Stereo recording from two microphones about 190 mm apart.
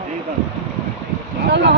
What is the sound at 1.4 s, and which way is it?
Speech, 65° right (ahead or behind).